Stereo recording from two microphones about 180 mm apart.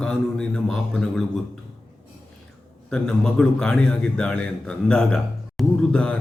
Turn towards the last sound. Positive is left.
turn(degrees=5)  # may be behind; listen again after turning